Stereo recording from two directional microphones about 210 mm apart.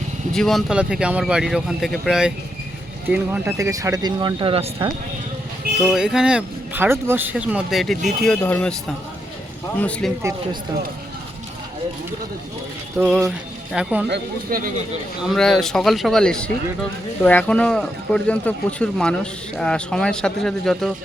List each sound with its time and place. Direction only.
0.3 s speech: centre (ahead or behind); by 4.9 s 25° right (ahead or behind)
5.9 s speech: centre (ahead or behind)
9.7 s speech: 5° left (ahead or behind)
13.0 s speech: 5° right (ahead or behind)
14.1 s speech: 45° right (ahead or behind)
15.2 s speech: centre (ahead or behind)